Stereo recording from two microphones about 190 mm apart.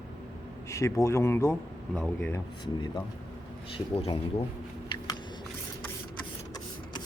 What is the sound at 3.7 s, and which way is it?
Speech, 30° left (ahead or behind).